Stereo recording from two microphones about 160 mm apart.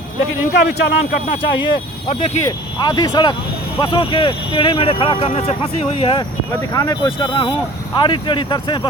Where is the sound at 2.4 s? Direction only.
25° left (ahead or behind).